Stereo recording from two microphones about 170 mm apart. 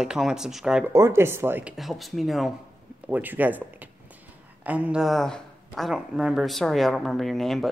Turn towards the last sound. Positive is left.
turn(degrees=0)  # may be behind; listen again after turning